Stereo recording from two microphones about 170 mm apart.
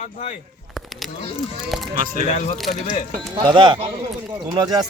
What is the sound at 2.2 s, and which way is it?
Speech, 45° left (ahead or behind).